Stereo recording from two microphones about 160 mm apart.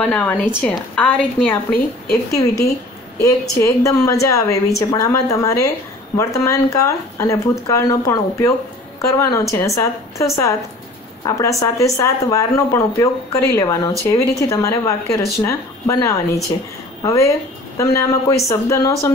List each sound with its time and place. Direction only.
0.0 s a woman's voice: 10° left (ahead or behind)
2.3 s speech: 20° left (ahead or behind)